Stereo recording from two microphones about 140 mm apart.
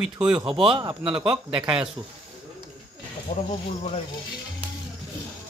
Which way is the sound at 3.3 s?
55° left (ahead or behind).